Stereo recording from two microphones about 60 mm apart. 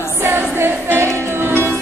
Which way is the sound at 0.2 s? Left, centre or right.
Right.